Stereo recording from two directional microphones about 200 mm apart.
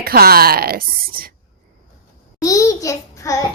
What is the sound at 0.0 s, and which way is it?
Speech, 50° right (ahead or behind).